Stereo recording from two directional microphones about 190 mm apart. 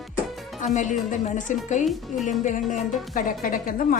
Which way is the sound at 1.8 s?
Centre (ahead or behind).